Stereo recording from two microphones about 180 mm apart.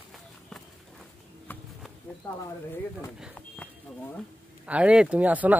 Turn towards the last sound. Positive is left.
turn(degrees=-10)  # may be behind; listen again after turning